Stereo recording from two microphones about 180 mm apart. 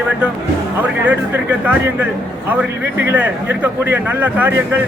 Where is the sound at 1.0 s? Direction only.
10° right (ahead or behind).